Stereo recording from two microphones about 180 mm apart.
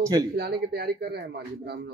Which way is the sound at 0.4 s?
60° right (ahead or behind).